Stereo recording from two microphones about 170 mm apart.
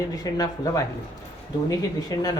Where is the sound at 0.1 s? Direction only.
20° left (ahead or behind).